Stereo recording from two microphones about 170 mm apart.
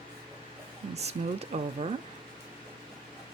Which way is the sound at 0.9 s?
40° right (ahead or behind).